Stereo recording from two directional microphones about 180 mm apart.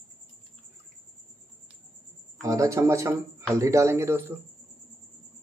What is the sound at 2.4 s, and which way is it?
A man's voice, 20° right (ahead or behind).